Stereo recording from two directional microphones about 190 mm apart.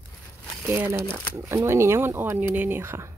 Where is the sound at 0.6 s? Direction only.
10° right (ahead or behind).